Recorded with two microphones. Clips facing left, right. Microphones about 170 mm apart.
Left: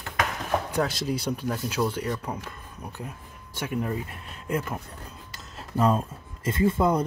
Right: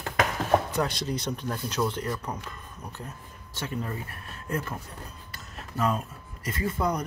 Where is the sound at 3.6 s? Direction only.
15° left (ahead or behind).